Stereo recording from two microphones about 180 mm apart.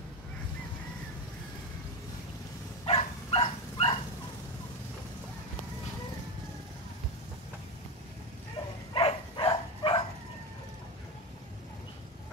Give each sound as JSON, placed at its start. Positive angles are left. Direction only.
{"t": 2.8, "sound": "dog", "side_deg": 30}
{"t": 8.9, "sound": "dog", "side_deg": 30}